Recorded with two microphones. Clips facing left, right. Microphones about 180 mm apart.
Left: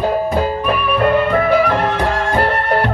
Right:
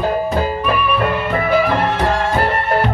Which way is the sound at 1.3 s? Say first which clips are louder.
Left 2 dB; 5° right (ahead or behind).